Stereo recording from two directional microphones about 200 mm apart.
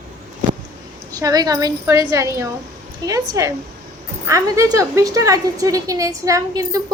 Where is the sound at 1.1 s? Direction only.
20° right (ahead or behind).